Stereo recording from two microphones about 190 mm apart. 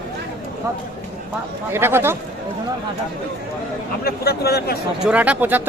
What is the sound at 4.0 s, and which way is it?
Speech, 55° left (ahead or behind).